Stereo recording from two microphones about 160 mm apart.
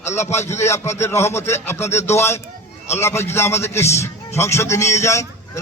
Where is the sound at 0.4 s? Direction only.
15° left (ahead or behind).